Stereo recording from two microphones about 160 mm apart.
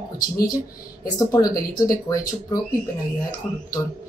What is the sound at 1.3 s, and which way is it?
Speech, 20° left (ahead or behind).